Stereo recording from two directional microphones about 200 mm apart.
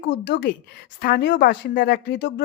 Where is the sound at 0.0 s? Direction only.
55° left (ahead or behind).